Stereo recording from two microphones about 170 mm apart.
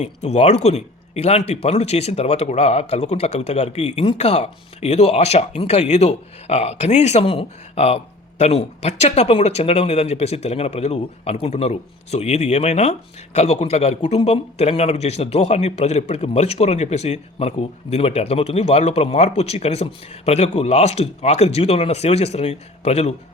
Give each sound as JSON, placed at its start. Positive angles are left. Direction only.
{"t": 0.0, "sound": "speech", "side_deg": 40}